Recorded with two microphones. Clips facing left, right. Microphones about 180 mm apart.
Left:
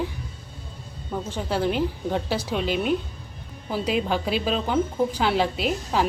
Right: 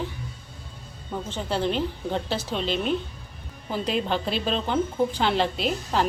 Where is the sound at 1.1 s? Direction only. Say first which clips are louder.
Left 1 dB; 5° left (ahead or behind).